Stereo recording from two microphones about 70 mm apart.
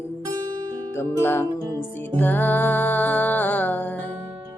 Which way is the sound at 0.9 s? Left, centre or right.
Left.